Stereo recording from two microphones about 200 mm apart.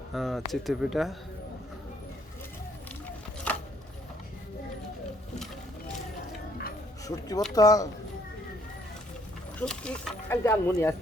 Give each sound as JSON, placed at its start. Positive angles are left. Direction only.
{"t": 0.1, "sound": "speech", "side_deg": 0}
{"t": 7.0, "sound": "speech", "side_deg": 20}
{"t": 9.6, "sound": "speech", "side_deg": 5}
{"t": 10.4, "sound": "speech", "side_deg": 15}